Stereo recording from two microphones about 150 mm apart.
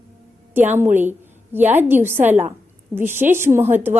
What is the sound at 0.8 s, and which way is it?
A woman's voice, 15° right (ahead or behind).